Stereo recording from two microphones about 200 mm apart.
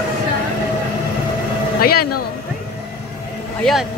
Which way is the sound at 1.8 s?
50° left (ahead or behind).